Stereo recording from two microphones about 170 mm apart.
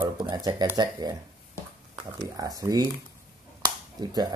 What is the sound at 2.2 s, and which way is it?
Speech, 20° right (ahead or behind).